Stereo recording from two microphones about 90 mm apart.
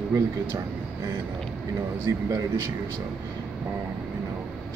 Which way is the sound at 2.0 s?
35° right (ahead or behind).